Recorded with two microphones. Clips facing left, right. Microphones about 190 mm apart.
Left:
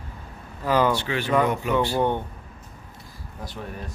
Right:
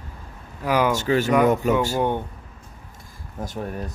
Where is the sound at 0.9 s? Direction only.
45° right (ahead or behind).